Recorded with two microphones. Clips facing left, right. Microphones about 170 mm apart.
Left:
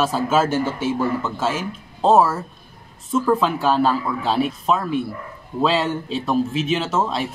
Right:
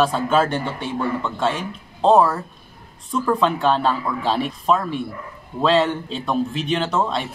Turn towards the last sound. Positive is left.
turn(degrees=5)  # may be behind; listen again after turning